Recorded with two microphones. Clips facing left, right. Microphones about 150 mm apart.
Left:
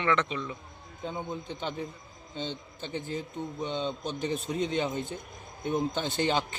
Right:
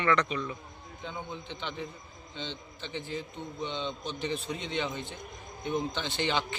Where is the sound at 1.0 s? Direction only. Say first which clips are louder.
Left 4 dB; 45° left (ahead or behind).